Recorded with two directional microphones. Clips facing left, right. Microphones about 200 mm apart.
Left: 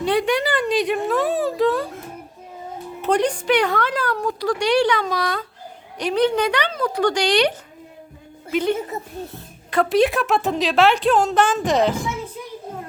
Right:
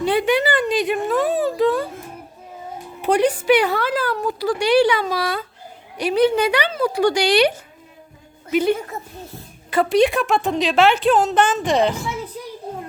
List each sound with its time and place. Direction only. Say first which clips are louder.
0.0 s a sound: right 2 dB; centre (ahead or behind)
3.0 s a woman's voice: right 2 dB; 10° right (ahead or behind)
8.9 s a child's voice: left 2 dB; 20° left (ahead or behind)
9.6 s speech: right 1 dB; centre (ahead or behind)